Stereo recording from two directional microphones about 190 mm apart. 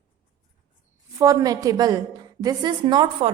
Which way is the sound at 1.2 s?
20° right (ahead or behind).